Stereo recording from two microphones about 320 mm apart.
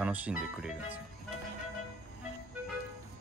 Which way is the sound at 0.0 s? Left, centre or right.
Centre.